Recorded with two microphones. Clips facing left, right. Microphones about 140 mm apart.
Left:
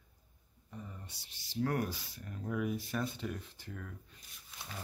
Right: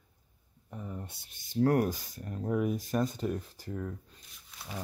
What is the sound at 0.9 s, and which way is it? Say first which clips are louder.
Speech: right 10 dB; 55° right (ahead or behind).